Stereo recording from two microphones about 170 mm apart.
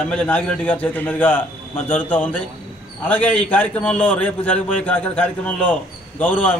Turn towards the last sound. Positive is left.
turn(degrees=10)  # may be behind; listen again after turning